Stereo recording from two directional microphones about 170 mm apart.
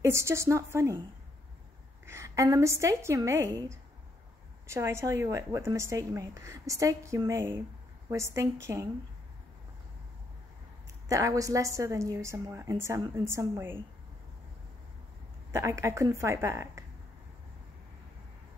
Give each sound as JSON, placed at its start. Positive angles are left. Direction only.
{"t": 0.0, "sound": "a woman's voice", "side_deg": -15}
{"t": 2.0, "sound": "a woman's voice", "side_deg": -15}
{"t": 11.1, "sound": "a woman's voice", "side_deg": -20}
{"t": 15.5, "sound": "a woman's voice", "side_deg": -15}